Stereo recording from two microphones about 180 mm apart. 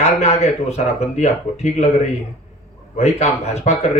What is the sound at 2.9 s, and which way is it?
Speech, 40° left (ahead or behind).